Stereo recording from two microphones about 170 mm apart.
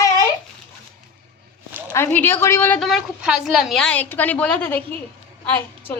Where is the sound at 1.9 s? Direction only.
15° left (ahead or behind).